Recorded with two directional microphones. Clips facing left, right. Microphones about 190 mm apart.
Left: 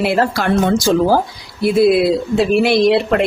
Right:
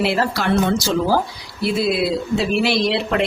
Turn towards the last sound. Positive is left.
turn(degrees=55)  # may be behind; listen again after turning